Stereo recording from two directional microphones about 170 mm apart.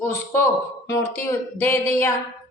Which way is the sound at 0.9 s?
15° left (ahead or behind).